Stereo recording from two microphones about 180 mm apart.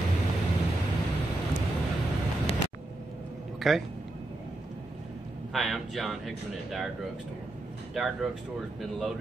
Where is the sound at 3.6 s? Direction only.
Centre (ahead or behind).